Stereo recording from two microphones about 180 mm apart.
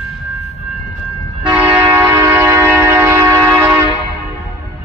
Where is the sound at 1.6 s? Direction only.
10° right (ahead or behind).